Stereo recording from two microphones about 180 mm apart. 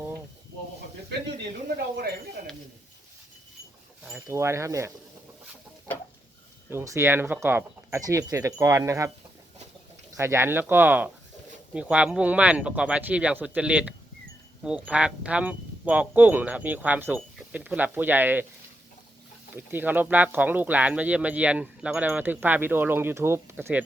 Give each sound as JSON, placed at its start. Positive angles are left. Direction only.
{"t": 1.4, "sound": "a sound", "side_deg": -60}
{"t": 4.3, "sound": "speech", "side_deg": -15}
{"t": 5.9, "sound": "a sound", "side_deg": 10}
{"t": 6.7, "sound": "speech", "side_deg": -15}
{"t": 10.2, "sound": "speech", "side_deg": -15}
{"t": 19.5, "sound": "speech", "side_deg": -10}